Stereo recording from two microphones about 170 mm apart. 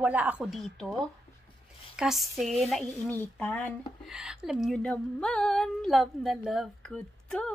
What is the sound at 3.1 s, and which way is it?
Speech, 10° left (ahead or behind).